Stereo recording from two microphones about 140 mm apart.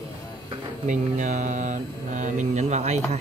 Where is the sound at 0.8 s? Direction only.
65° right (ahead or behind).